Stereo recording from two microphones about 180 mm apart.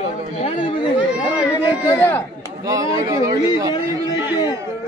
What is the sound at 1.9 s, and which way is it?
Speech, 10° left (ahead or behind).